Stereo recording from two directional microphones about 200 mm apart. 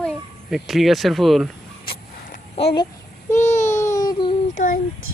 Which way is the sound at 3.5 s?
35° left (ahead or behind).